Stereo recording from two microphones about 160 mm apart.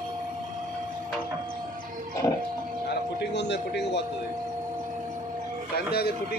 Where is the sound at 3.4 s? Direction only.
90° left.